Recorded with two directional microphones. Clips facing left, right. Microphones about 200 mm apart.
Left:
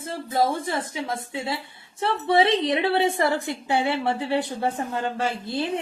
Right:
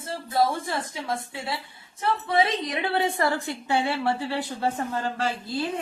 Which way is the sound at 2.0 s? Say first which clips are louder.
Left 3 dB; 30° left (ahead or behind).